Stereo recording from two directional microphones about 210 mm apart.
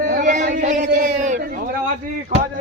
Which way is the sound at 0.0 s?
40° right (ahead or behind).